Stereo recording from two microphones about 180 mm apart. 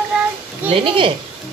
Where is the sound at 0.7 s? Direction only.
30° right (ahead or behind).